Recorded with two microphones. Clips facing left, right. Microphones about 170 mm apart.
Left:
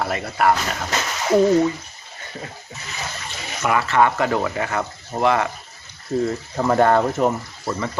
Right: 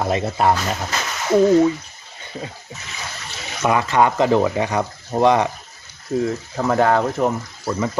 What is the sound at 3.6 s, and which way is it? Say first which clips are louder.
Speech: right 1 dB; 20° right (ahead or behind).